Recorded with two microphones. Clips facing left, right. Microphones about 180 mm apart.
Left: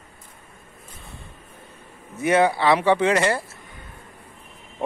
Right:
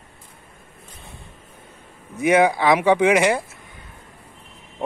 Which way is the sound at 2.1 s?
15° right (ahead or behind).